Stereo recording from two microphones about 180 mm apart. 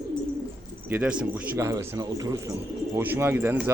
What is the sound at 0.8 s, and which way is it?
Speech, 10° right (ahead or behind).